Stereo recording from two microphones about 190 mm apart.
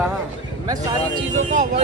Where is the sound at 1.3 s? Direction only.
40° right (ahead or behind).